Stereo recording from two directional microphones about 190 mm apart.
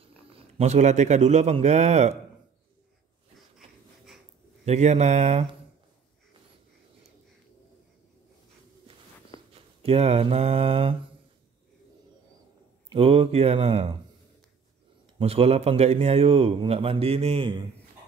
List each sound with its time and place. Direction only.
0.0 s a man's voice: 30° right (ahead or behind)
3.5 s wheeze: centre (ahead or behind)
4.6 s a man's voice: 35° right (ahead or behind)
9.5 s speech: 30° right (ahead or behind)
12.9 s a man's voice: 30° right (ahead or behind)
15.1 s a man's voice: 30° right (ahead or behind)